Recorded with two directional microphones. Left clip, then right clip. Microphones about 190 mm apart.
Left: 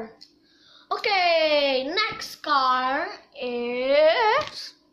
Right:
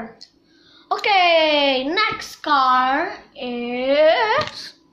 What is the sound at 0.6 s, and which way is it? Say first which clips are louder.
A child's voice: right 5 dB; 15° left (ahead or behind).